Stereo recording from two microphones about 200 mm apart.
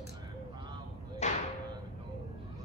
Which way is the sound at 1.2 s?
35° left (ahead or behind).